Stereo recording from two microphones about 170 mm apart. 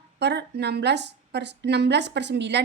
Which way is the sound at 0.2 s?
80° right.